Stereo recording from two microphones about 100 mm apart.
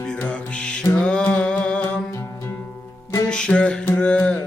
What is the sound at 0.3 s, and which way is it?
Music, 10° left (ahead or behind).